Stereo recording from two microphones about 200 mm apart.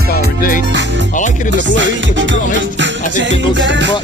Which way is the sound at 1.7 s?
65° right (ahead or behind).